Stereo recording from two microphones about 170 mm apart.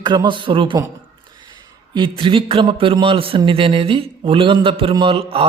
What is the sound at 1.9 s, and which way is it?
A man's voice, 30° right (ahead or behind).